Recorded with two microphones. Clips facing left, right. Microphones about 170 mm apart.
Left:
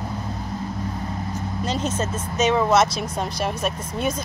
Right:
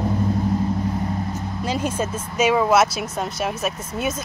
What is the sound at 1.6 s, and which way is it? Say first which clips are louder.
Speech: right 1 dB; 10° right (ahead or behind).